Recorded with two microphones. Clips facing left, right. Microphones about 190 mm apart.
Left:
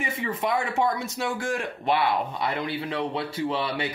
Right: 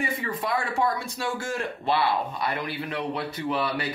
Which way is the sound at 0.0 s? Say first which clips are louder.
Left 1 dB; 20° left (ahead or behind).